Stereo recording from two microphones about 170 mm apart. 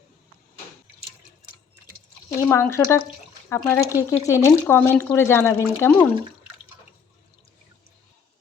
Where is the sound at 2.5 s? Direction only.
15° left (ahead or behind).